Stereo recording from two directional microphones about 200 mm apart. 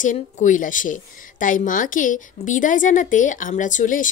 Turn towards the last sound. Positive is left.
turn(degrees=40)  # may be behind; listen again after turning